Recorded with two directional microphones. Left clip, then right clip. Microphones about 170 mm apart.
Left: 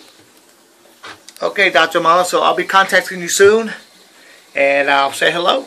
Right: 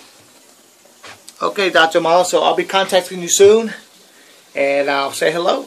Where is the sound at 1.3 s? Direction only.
15° right (ahead or behind).